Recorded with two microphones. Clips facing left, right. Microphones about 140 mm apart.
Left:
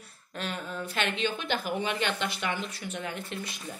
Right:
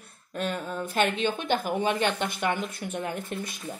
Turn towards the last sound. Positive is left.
turn(degrees=-50)  # may be behind; listen again after turning